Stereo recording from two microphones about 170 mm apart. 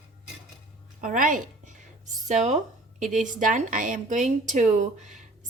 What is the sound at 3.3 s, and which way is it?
A woman's voice, 50° right (ahead or behind).